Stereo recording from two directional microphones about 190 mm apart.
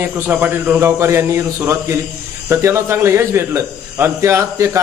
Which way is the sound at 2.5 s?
15° right (ahead or behind).